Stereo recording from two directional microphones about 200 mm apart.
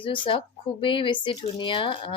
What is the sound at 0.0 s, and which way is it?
Speech, 25° left (ahead or behind).